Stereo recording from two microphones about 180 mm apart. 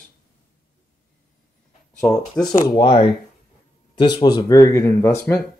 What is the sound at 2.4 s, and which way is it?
Speech, 20° left (ahead or behind).